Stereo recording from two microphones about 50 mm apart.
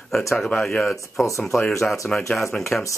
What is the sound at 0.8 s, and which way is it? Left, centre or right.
Speech, centre.